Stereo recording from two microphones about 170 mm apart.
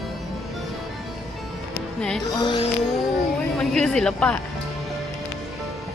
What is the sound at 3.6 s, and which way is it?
Speech, 5° left (ahead or behind).